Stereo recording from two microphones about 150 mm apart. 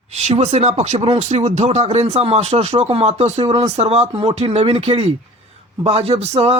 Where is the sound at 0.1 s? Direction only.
45° right (ahead or behind).